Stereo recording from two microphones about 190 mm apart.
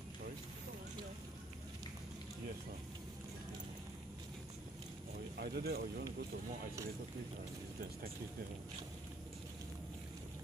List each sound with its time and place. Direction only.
5.4 s speech: 55° right (ahead or behind)